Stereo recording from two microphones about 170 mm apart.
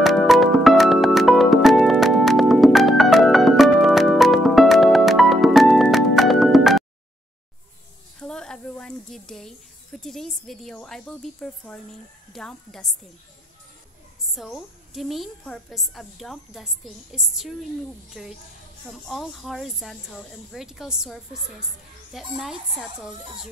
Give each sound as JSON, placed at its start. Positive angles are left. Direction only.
{"t": 0.0, "sound": "music", "side_deg": 0}
{"t": 8.2, "sound": "a sound", "side_deg": 5}
{"t": 12.3, "sound": "a woman's voice", "side_deg": 0}
{"t": 14.3, "sound": "a woman's voice", "side_deg": 0}